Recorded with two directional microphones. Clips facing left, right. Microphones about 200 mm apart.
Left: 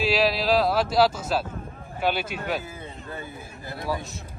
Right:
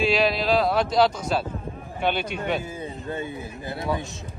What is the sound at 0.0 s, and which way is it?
Speech, centre (ahead or behind).